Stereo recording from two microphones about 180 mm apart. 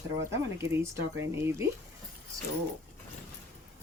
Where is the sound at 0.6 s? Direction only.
15° right (ahead or behind).